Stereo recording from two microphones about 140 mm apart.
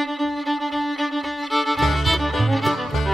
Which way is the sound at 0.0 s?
Centre (ahead or behind).